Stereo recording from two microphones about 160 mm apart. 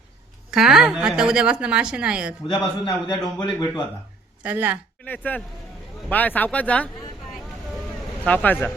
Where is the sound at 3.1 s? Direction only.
30° left (ahead or behind).